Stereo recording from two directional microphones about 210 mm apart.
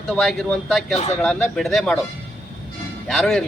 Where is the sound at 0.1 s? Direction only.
Centre (ahead or behind).